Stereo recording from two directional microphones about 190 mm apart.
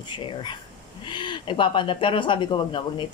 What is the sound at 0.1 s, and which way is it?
Speech, 25° left (ahead or behind).